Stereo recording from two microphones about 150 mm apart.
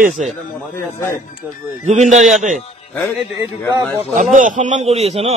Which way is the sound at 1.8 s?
50° right (ahead or behind).